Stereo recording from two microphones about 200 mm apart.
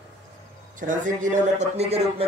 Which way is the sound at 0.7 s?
40° right (ahead or behind).